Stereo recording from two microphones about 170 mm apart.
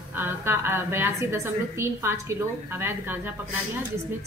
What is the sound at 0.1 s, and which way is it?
A woman's voice, 15° right (ahead or behind).